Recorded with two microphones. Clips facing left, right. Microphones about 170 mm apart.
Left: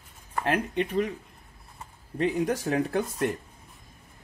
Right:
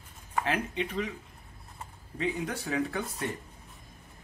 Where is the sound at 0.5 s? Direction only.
55° left (ahead or behind).